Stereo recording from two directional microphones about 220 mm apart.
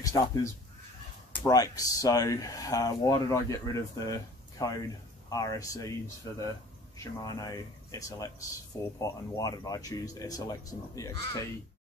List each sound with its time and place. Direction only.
0.0 s speech: 15° left (ahead or behind)
7.0 s speech: 15° left (ahead or behind)